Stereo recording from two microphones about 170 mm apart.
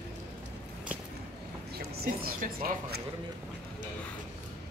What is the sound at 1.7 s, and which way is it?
A woman's voice, 65° right (ahead or behind).